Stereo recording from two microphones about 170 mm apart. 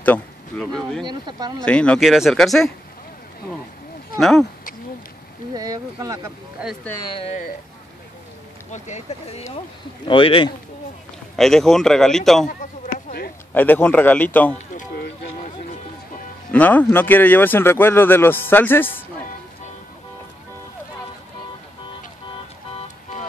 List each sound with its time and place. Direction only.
0.0 s speech: 5° left (ahead or behind)
1.0 s speech: 25° right (ahead or behind)
1.6 s speech: 5° left (ahead or behind)
4.2 s speech: centre (ahead or behind)
5.5 s speech: 20° right (ahead or behind)
7.0 s speech: 35° left (ahead or behind)
8.7 s speech: 45° left (ahead or behind)
10.0 s speech: 30° left (ahead or behind)
11.3 s speech: centre (ahead or behind)
12.8 s a sound: 60° left (ahead or behind)
13.5 s speech: 10° left (ahead or behind)
16.5 s speech: 10° left (ahead or behind)